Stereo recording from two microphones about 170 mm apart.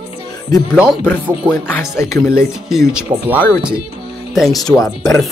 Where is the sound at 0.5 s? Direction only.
20° left (ahead or behind).